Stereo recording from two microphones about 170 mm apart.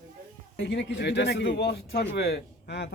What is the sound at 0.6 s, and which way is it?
Speech, 90° left.